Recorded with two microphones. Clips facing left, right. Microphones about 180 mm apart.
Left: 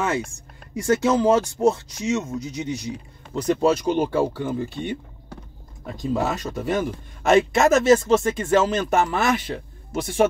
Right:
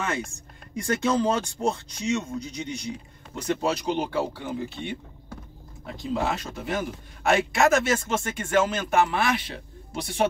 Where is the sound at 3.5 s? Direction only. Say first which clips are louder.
Left 6 dB; 45° left (ahead or behind).